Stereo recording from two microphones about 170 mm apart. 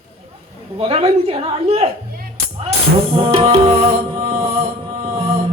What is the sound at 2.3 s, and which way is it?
Music, 35° right (ahead or behind).